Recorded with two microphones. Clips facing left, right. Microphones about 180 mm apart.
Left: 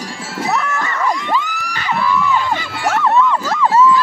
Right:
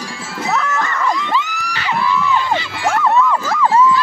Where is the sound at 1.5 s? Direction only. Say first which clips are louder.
Even; 50° left (ahead or behind).